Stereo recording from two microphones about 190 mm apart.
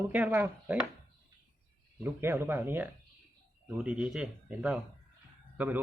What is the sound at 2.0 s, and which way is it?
A man's voice, 10° right (ahead or behind).